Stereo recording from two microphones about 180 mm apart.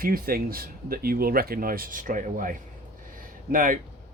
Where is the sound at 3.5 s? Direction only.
50° right (ahead or behind).